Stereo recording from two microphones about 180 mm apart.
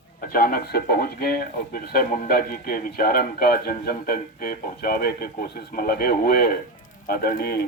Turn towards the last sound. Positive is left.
turn(degrees=60)  # may be behind; listen again after turning